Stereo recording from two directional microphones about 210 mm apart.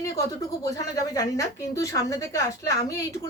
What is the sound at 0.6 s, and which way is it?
Speech, 15° left (ahead or behind).